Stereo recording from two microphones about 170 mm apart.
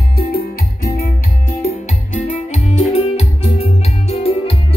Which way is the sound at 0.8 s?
45° left (ahead or behind).